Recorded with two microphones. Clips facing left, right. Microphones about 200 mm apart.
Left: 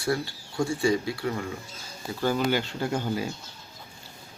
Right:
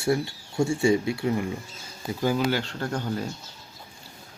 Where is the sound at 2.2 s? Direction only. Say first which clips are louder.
Even; 5° right (ahead or behind).